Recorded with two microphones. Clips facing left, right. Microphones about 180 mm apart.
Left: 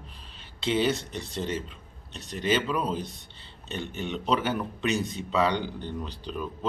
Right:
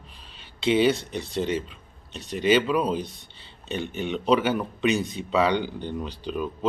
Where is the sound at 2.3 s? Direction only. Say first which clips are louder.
Right 6 dB; 75° right (ahead or behind).